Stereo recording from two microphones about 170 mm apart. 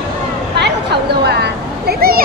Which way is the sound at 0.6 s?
80° right.